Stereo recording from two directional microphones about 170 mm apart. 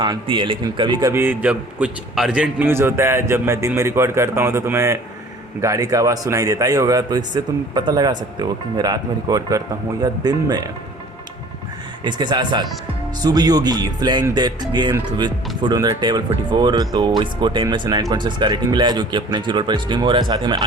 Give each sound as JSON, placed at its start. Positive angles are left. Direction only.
{"t": 0.0, "sound": "a man's voice", "side_deg": -25}
{"t": 1.1, "sound": "a man's voice", "side_deg": -10}
{"t": 12.0, "sound": "a man's voice", "side_deg": -25}